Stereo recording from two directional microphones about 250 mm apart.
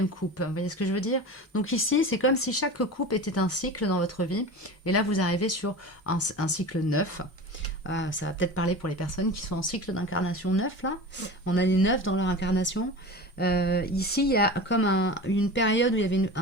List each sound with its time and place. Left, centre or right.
0.3 s speech: left
7.9 s speech: left